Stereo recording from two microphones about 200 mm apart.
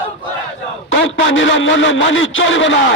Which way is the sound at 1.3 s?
70° left (ahead or behind).